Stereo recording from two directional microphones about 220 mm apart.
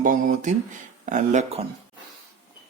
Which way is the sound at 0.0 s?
35° right (ahead or behind).